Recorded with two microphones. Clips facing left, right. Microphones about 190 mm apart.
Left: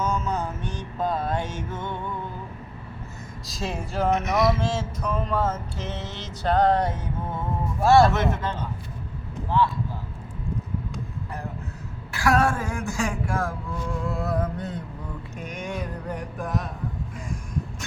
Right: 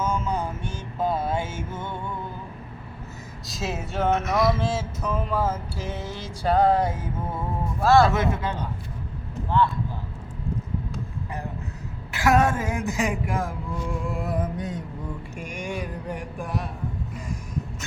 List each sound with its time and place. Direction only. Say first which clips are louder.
0.0 s mantra: even; 10° right (ahead or behind)
3.4 s a sound: right 1 dB; centre (ahead or behind)
4.3 s mantra: even; centre (ahead or behind)
7.8 s speech: left 1 dB; 15° left (ahead or behind)
8.1 s mantra: even; 10° right (ahead or behind)
12.1 s speech: right 1 dB; 20° right (ahead or behind)
14.0 s mantra: left 3 dB; 15° right (ahead or behind)
15.4 s a sound: even; 10° right (ahead or behind)